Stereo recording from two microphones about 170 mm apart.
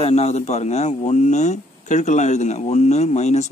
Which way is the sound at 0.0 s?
40° left (ahead or behind).